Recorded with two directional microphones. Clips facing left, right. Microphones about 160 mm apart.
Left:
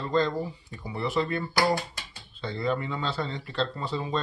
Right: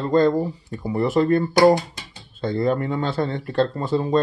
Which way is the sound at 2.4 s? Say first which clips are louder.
Right 8 dB; 45° right (ahead or behind).